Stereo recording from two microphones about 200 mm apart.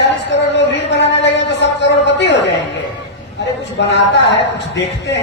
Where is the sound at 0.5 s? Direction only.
60° left (ahead or behind).